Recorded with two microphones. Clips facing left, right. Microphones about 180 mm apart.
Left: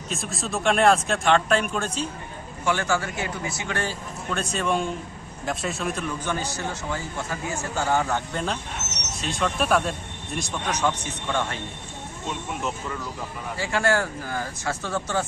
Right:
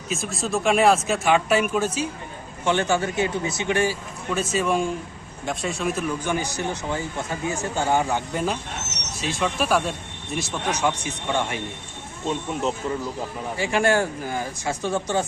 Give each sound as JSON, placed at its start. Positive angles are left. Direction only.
{"t": 0.1, "sound": "speech", "side_deg": 0}
{"t": 2.6, "sound": "speech", "side_deg": -20}
{"t": 13.6, "sound": "speech", "side_deg": -20}